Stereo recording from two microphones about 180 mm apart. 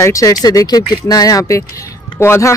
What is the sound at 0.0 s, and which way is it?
Speech, 20° left (ahead or behind).